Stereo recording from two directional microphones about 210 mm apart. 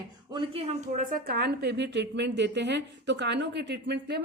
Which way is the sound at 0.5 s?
35° right (ahead or behind).